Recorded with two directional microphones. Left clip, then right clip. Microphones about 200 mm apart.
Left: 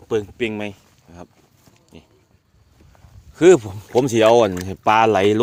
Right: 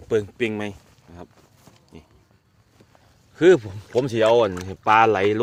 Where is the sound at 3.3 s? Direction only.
25° left (ahead or behind).